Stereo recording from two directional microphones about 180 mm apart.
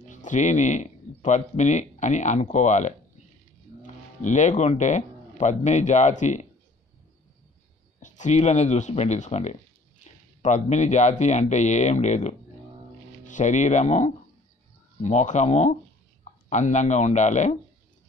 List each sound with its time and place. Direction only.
0.1 s speech: 45° left (ahead or behind)
8.0 s speech: 40° left (ahead or behind)